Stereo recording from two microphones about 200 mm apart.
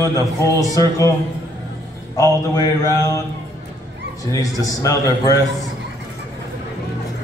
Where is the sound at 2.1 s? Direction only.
15° left (ahead or behind).